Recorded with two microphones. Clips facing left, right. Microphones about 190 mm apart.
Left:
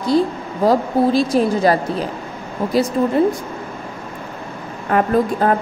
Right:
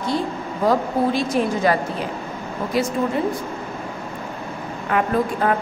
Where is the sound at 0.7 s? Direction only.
35° left (ahead or behind).